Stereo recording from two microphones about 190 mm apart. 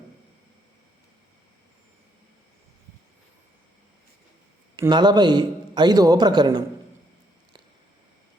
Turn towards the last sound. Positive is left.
turn(degrees=-25)  # may be behind; listen again after turning